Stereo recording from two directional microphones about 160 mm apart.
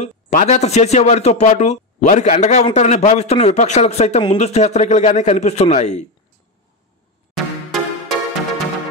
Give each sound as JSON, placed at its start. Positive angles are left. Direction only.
{"t": 0.0, "sound": "speech", "side_deg": 50}
{"t": 7.3, "sound": "music", "side_deg": 0}